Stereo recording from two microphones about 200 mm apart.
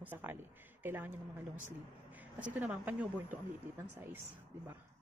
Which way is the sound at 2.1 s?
5° right (ahead or behind).